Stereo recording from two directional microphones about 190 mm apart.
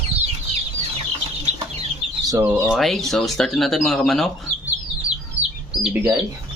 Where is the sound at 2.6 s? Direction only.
Centre (ahead or behind).